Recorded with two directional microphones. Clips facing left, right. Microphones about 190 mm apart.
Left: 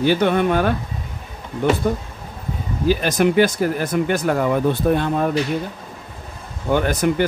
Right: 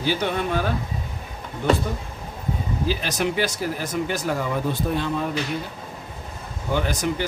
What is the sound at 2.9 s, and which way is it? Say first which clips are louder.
Speech: left 9 dB; 50° left (ahead or behind).